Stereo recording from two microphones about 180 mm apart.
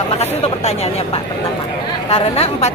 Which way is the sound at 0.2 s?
35° left (ahead or behind).